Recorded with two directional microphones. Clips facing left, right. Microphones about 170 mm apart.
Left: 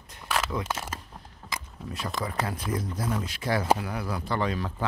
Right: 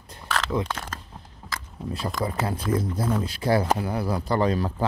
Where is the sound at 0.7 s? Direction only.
5° left (ahead or behind).